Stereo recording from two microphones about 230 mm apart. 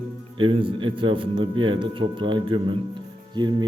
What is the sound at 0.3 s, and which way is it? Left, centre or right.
A man's voice, right.